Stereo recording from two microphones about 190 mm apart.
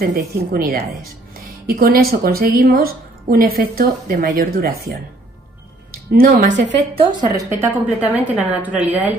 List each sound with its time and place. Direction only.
0.0 s speech: 50° right (ahead or behind)
6.5 s a woman's voice: 65° right (ahead or behind)
7.3 s a woman's voice: 15° right (ahead or behind)